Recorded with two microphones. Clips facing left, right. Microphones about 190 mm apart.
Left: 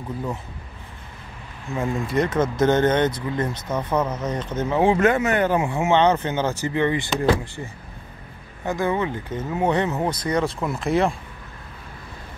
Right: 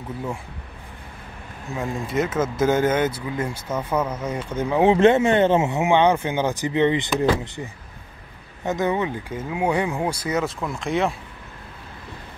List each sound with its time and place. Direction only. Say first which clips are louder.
1.7 s speech: left 2 dB; centre (ahead or behind); by 7.2 s 20° right (ahead or behind)
8.6 s speech: right 1 dB; 20° right (ahead or behind); by 11.1 s centre (ahead or behind)